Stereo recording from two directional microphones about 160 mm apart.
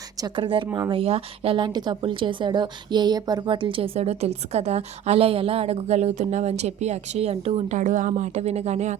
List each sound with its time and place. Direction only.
0.2 s speech: 30° right (ahead or behind)